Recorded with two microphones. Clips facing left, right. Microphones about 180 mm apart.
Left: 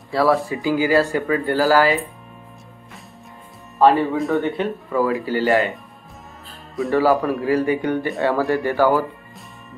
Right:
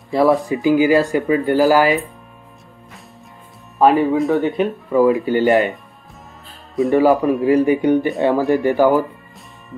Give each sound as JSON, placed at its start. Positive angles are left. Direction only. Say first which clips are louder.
{"t": 0.1, "sound": "speech", "louder": "right 3 dB", "side_deg": -20}
{"t": 3.8, "sound": "speech", "louder": "right 2 dB", "side_deg": -15}
{"t": 6.9, "sound": "speech", "louder": "right 3 dB", "side_deg": -20}